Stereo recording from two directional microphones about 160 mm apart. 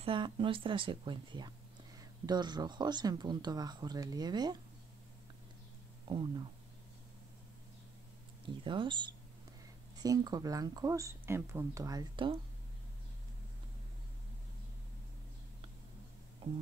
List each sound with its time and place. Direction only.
0.0 s speech: 30° right (ahead or behind)
6.0 s speech: 30° right (ahead or behind)
8.6 s speech: 30° right (ahead or behind)